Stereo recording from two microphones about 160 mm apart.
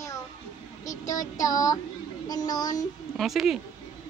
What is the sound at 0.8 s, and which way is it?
Child singing, 20° left (ahead or behind).